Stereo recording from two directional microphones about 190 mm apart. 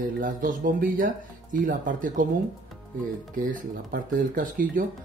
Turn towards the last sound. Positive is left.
turn(degrees=-45)  # may be behind; listen again after turning